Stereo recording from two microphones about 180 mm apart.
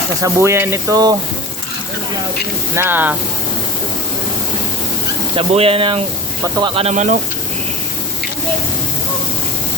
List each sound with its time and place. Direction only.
0.2 s speech: 15° right (ahead or behind)
2.7 s speech: 10° right (ahead or behind)
5.4 s speech: 30° right (ahead or behind)